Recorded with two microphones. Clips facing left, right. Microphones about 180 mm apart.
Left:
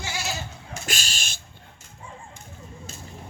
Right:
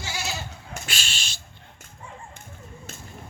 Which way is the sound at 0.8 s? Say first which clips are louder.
Left 6 dB; 40° left (ahead or behind).